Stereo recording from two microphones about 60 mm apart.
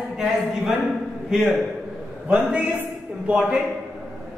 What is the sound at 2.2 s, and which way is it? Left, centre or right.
Speech, right.